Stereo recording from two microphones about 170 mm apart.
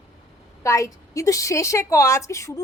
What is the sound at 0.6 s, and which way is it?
A woman's voice, 20° left (ahead or behind).